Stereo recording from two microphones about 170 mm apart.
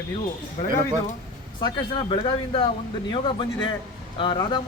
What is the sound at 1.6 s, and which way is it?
Speech, 25° left (ahead or behind).